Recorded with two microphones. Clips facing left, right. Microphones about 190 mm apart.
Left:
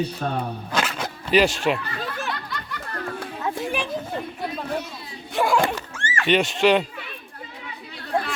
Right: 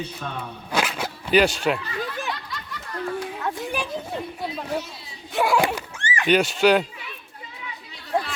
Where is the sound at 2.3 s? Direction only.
60° left (ahead or behind).